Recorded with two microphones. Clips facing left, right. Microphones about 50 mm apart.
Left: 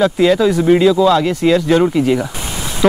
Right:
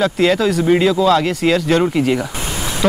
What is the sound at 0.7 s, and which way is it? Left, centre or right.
Speech, centre.